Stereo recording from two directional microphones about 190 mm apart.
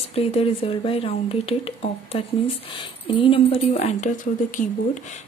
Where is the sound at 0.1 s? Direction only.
30° left (ahead or behind).